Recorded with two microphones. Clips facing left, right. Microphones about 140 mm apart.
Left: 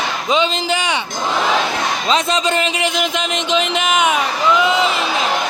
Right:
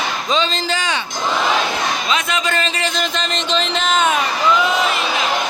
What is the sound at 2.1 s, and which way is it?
Speech, 35° left (ahead or behind).